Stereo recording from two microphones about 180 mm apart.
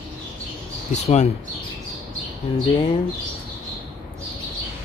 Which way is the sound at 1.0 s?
40° left (ahead or behind).